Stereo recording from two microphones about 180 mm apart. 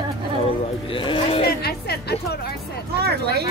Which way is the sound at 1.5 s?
60° left (ahead or behind).